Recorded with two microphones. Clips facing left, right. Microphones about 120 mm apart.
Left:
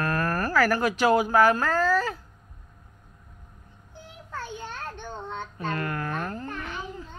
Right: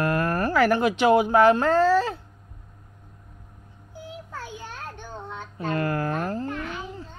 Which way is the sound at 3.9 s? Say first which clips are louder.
Right 1 dB; 10° right (ahead or behind).